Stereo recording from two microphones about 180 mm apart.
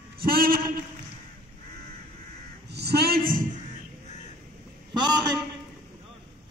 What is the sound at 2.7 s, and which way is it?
Crow, 65° right (ahead or behind).